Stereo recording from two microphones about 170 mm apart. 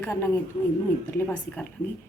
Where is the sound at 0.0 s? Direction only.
15° left (ahead or behind).